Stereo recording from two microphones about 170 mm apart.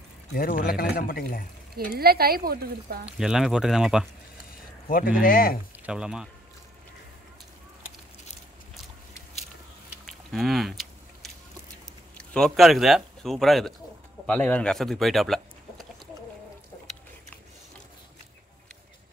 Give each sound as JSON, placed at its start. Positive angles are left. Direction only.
{"t": 0.3, "sound": "speech", "side_deg": 55}
{"t": 1.8, "sound": "speech", "side_deg": -60}
{"t": 3.1, "sound": "speech", "side_deg": -5}
{"t": 4.8, "sound": "speech", "side_deg": 55}
{"t": 5.9, "sound": "speech", "side_deg": -5}
{"t": 10.0, "sound": "a sound", "side_deg": 0}
{"t": 12.2, "sound": "speech", "side_deg": 5}